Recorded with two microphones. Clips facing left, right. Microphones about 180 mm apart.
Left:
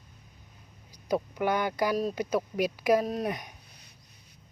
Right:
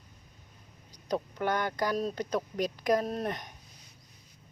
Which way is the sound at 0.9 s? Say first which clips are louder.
Left 3 dB; 10° left (ahead or behind).